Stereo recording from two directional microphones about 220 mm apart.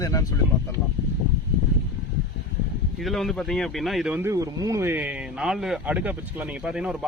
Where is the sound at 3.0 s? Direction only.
Centre (ahead or behind).